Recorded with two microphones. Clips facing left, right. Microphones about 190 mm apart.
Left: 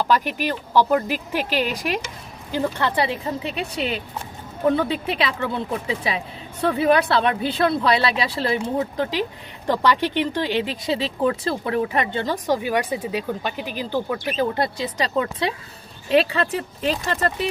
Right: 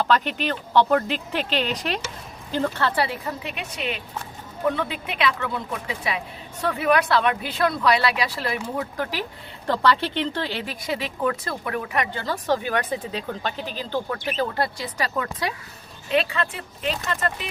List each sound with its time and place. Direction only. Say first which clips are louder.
0.0 s speech: left 1 dB; 10° left (ahead or behind)
3.5 s speech: left 5 dB; 35° left (ahead or behind)
12.2 s speech: left 2 dB; 15° left (ahead or behind)
16.1 s speech: left 5 dB; 35° left (ahead or behind)